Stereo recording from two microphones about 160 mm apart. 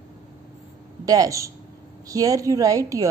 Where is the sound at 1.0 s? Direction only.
20° right (ahead or behind).